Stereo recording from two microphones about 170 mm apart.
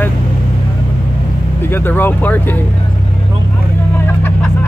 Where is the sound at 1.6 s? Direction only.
10° left (ahead or behind).